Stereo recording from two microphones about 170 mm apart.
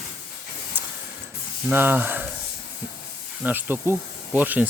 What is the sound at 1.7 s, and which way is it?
Speech, 10° right (ahead or behind).